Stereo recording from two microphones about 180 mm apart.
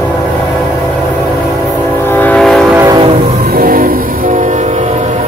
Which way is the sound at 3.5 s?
50° right (ahead or behind).